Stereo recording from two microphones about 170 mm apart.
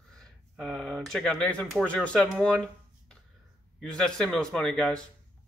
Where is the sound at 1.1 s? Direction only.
5° left (ahead or behind).